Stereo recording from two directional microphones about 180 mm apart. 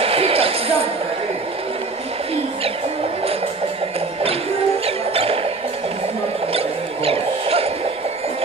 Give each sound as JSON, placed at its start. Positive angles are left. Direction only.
{"t": 0.0, "sound": "basketball bounce", "side_deg": -30}
{"t": 4.8, "sound": "music", "side_deg": -30}
{"t": 7.1, "sound": "music", "side_deg": -35}